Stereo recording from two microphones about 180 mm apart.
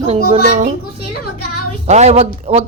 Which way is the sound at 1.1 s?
60° left (ahead or behind).